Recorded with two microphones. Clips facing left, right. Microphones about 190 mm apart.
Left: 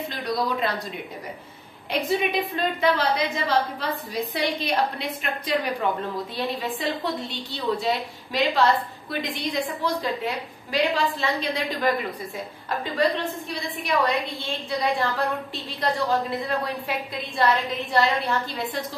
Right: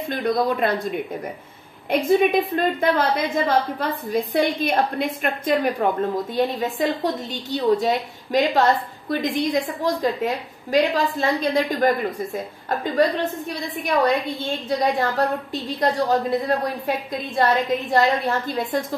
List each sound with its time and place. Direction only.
0.1 s a woman's voice: 55° right (ahead or behind)
1.9 s a woman's voice: 50° right (ahead or behind)
15.8 s a woman's voice: 45° right (ahead or behind)